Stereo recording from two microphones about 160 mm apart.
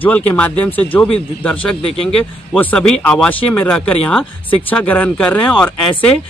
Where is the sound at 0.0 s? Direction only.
10° left (ahead or behind).